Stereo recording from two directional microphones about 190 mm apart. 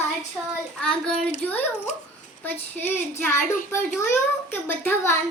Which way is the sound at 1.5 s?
10° left (ahead or behind).